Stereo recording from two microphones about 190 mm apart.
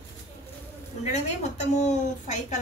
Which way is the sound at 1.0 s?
35° left (ahead or behind).